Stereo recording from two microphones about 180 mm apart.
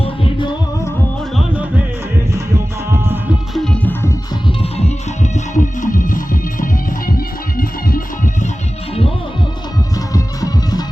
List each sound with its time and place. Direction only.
0.0 s music: 25° left (ahead or behind)
2.9 s music: 10° right (ahead or behind)
3.5 s music: 5° left (ahead or behind)
4.4 s music: 35° left (ahead or behind); by 8.3 s 50° left (ahead or behind)
10.1 s music: 20° left (ahead or behind)